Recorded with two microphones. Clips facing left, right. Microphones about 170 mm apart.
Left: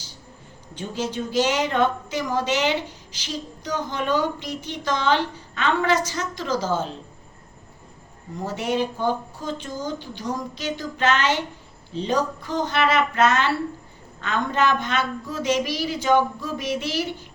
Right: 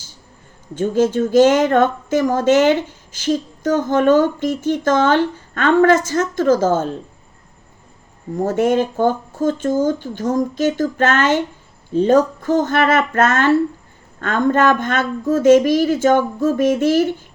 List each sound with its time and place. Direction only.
0.7 s speech: 50° right (ahead or behind)
8.3 s speech: 50° right (ahead or behind)